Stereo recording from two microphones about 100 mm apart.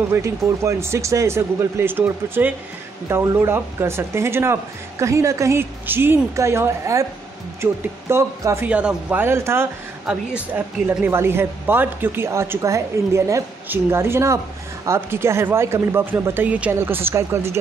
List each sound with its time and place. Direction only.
0.1 s speech: 30° right (ahead or behind)
8.6 s speech: 10° right (ahead or behind)
10.0 s speech: 10° right (ahead or behind)
11.1 s speech: 25° right (ahead or behind)